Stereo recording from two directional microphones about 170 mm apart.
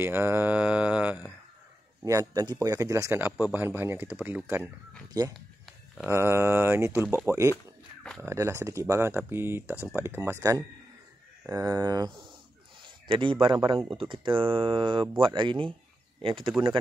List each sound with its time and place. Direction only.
0.0 s speech: 15° right (ahead or behind)
2.0 s speech: 20° right (ahead or behind)
5.2 s speech: 25° right (ahead or behind)